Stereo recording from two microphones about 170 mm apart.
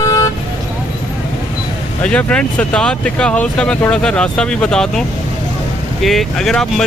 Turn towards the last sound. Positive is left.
turn(degrees=5)  # may be behind; listen again after turning